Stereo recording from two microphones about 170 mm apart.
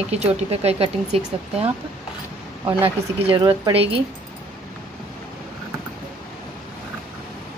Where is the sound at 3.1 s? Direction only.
30° right (ahead or behind).